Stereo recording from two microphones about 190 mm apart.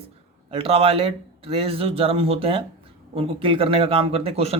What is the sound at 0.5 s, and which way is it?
A man's voice, 30° right (ahead or behind).